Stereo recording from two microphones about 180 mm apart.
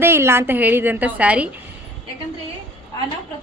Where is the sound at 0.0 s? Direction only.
15° right (ahead or behind).